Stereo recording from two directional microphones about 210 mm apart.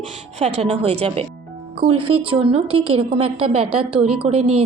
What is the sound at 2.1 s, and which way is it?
Speech, 90° right.